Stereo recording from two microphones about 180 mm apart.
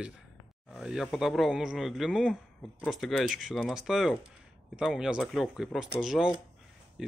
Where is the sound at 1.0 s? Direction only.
Centre (ahead or behind).